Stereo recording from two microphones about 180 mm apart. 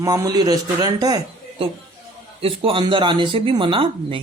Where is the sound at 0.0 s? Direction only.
20° right (ahead or behind).